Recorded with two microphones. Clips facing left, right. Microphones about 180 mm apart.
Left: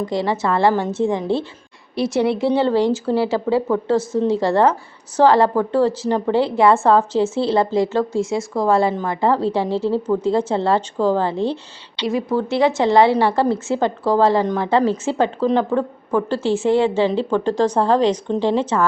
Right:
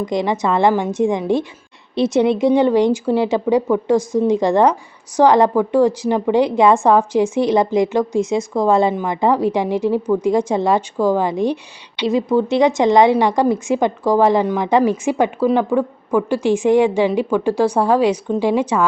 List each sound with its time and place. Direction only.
0.0 s a woman's voice: 15° right (ahead or behind)